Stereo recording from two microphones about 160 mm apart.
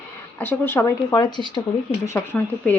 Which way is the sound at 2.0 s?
15° left (ahead or behind).